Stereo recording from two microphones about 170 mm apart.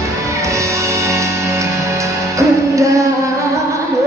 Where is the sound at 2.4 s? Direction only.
20° right (ahead or behind).